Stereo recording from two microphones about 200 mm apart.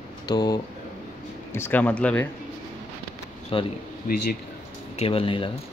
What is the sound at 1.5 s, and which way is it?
Speech, 10° left (ahead or behind).